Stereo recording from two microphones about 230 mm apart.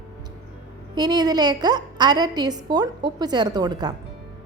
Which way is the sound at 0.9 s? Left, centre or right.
Centre.